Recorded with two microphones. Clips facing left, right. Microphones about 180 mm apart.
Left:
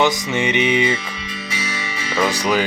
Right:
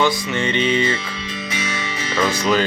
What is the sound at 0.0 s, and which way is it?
Music, 15° left (ahead or behind).